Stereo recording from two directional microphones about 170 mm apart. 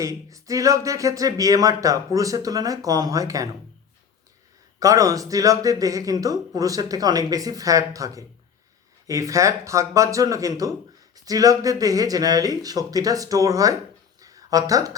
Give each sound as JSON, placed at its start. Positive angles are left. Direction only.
{"t": 0.0, "sound": "speech", "side_deg": -20}
{"t": 4.8, "sound": "speech", "side_deg": -20}
{"t": 14.2, "sound": "a sound", "side_deg": -20}